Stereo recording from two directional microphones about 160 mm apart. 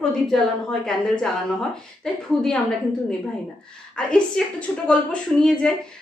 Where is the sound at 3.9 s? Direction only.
5° left (ahead or behind).